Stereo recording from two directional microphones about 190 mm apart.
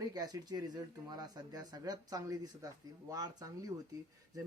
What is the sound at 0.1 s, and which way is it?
Speech, 20° right (ahead or behind).